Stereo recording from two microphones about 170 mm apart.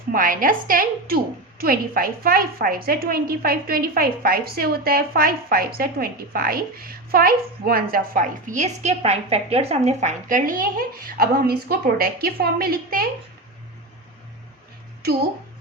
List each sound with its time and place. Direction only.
0.1 s a woman's voice: 55° right (ahead or behind)